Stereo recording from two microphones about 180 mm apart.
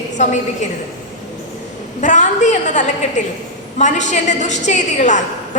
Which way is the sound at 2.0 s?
40° left (ahead or behind).